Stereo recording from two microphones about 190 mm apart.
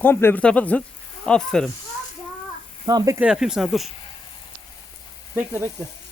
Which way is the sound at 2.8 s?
20° right (ahead or behind).